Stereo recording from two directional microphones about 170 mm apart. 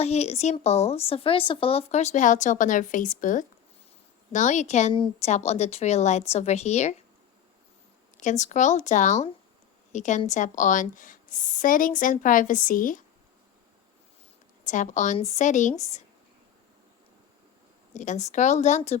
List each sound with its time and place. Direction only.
0.0 s a woman's voice: 40° left (ahead or behind)
8.2 s a woman's voice: 45° left (ahead or behind)
14.6 s a woman's voice: 45° left (ahead or behind)
17.9 s a woman's voice: 45° left (ahead or behind)